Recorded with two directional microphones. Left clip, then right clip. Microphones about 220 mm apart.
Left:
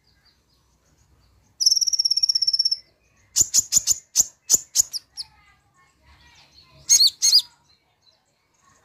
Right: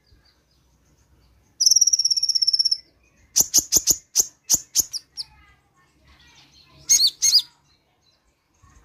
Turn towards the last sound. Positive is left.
turn(degrees=5)  # may be behind; listen again after turning